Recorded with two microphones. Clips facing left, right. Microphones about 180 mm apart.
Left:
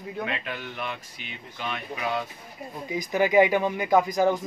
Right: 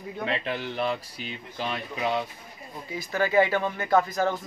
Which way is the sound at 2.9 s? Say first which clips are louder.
Left 3 dB; 15° left (ahead or behind).